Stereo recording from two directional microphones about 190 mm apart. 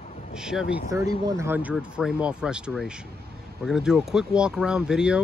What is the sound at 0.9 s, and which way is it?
Speech, 15° right (ahead or behind).